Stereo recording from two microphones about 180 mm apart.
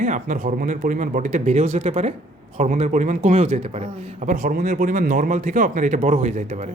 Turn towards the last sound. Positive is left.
turn(degrees=-40)  # may be behind; listen again after turning